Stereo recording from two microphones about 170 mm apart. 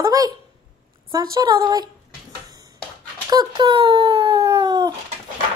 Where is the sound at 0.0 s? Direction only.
20° right (ahead or behind).